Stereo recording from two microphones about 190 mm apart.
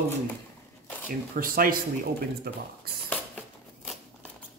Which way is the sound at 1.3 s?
50° right (ahead or behind).